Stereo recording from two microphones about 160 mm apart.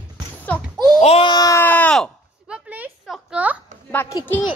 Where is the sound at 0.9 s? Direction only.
40° left (ahead or behind).